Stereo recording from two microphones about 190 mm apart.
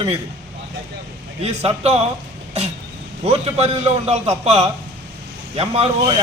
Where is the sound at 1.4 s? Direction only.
35° right (ahead or behind).